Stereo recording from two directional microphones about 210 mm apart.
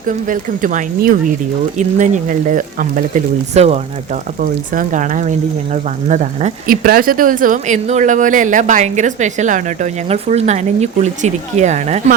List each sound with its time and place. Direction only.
0.3 s speech: 40° right (ahead or behind)